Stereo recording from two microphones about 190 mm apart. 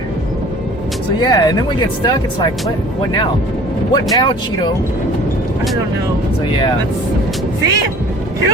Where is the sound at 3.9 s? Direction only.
20° left (ahead or behind).